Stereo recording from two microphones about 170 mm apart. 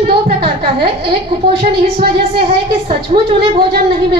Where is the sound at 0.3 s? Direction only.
30° right (ahead or behind).